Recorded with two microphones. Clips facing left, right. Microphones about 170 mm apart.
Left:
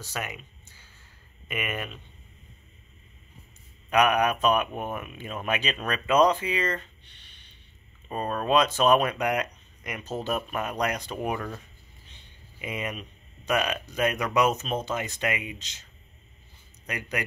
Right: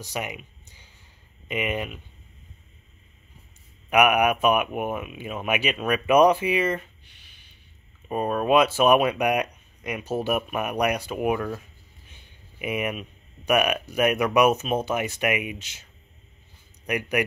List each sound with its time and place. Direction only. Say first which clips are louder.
0.0 s speech: right 3 dB; 15° right (ahead or behind)
3.9 s speech: right 3 dB; 10° right (ahead or behind)
12.1 s a sound: right 1 dB; 15° right (ahead or behind)
13.5 s speech: right 5 dB; 15° right (ahead or behind)